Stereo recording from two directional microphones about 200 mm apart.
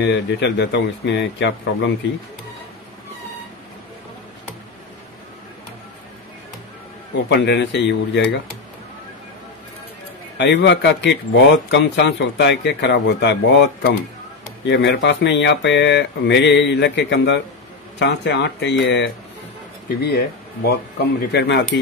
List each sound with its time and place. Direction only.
0.0 s speech: 60° left (ahead or behind)
7.2 s speech: 60° left (ahead or behind)
10.3 s speech: 60° left (ahead or behind)
21.3 s speech: 60° left (ahead or behind)